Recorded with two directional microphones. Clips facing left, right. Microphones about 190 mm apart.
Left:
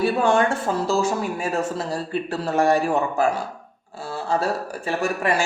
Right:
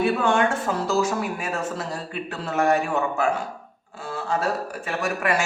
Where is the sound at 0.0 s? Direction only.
35° left (ahead or behind).